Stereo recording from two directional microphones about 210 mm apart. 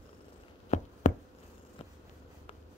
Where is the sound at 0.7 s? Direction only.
35° left (ahead or behind).